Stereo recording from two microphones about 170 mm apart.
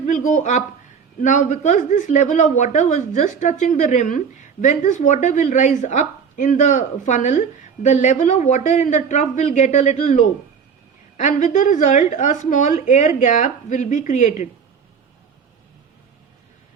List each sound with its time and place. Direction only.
0.1 s a woman's voice: 45° left (ahead or behind)